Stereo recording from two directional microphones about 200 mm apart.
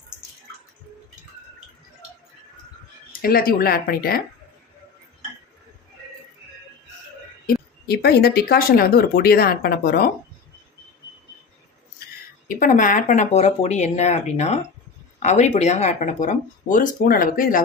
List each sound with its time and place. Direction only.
3.1 s speech: 50° left (ahead or behind)
7.4 s speech: 50° left (ahead or behind)
12.5 s speech: 40° left (ahead or behind)